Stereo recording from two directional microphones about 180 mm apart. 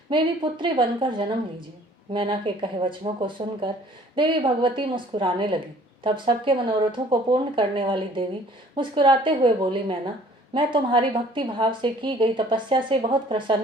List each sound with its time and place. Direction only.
0.1 s a woman's voice: 25° right (ahead or behind)
10.5 s a woman's voice: 25° right (ahead or behind)